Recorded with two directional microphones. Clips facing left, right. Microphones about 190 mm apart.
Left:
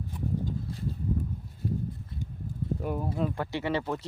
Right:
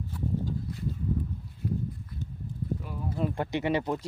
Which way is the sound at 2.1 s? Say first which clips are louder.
Left 1 dB; 25° left (ahead or behind).